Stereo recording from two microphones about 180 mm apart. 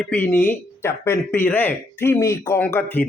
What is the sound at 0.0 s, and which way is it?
Speech, 10° left (ahead or behind).